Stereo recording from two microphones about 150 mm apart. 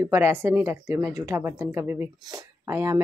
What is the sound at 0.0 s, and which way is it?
Speech, 15° right (ahead or behind).